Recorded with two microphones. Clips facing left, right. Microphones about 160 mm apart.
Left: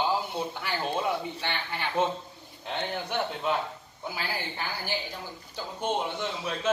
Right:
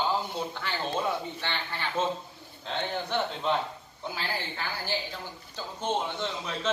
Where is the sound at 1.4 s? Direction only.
15° left (ahead or behind).